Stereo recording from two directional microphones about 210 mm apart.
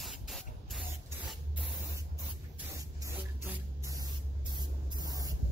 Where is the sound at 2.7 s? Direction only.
15° right (ahead or behind).